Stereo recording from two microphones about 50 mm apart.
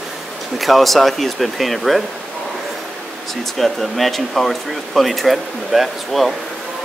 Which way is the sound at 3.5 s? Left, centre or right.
Centre.